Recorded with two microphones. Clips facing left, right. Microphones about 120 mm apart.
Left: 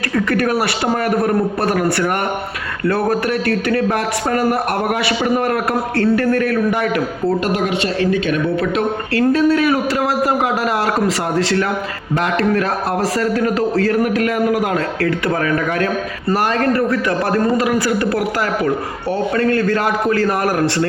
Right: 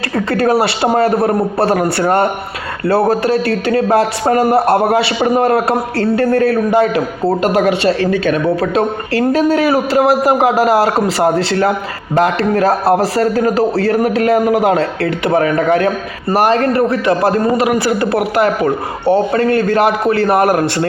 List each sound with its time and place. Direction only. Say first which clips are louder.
0.3 s a man's voice: right 7 dB; 25° right (ahead or behind)
7.7 s a man's voice: right 4 dB; 40° right (ahead or behind)